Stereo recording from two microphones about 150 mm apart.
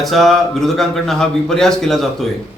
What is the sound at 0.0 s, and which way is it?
A man's voice, centre (ahead or behind).